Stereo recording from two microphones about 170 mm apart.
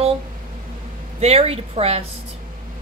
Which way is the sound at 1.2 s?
35° right (ahead or behind).